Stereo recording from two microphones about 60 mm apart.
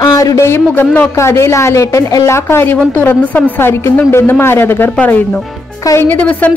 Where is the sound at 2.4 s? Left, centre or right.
Left.